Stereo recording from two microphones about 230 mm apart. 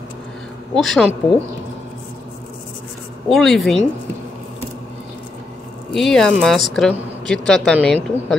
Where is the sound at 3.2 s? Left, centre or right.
Centre.